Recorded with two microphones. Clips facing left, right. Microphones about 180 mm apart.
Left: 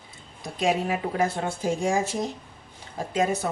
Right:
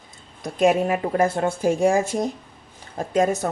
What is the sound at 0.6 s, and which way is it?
A woman's voice, 50° right (ahead or behind).